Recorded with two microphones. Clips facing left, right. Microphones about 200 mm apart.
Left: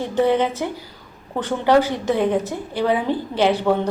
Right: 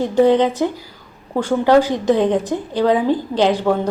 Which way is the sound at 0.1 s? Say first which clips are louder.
Right 4 dB; 15° right (ahead or behind).